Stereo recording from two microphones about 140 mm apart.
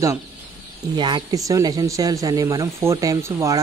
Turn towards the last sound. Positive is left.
turn(degrees=-25)  # may be behind; listen again after turning